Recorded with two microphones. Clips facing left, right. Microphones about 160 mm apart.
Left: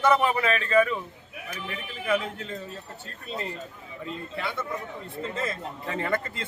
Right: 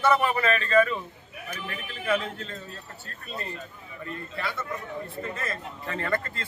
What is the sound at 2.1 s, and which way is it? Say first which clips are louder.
Speech: even; 10° left (ahead or behind).